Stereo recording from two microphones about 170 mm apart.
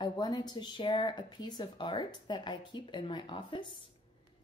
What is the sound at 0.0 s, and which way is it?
Speech, 20° left (ahead or behind).